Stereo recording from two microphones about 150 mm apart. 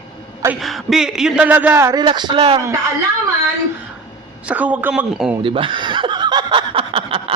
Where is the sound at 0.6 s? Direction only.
Centre (ahead or behind); by 2.0 s 15° right (ahead or behind).